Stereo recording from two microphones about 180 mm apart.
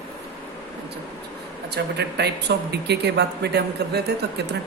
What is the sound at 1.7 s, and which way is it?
A woman's voice, 70° right (ahead or behind).